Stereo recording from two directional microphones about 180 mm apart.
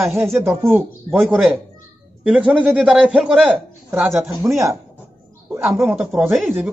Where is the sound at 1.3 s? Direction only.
Centre (ahead or behind).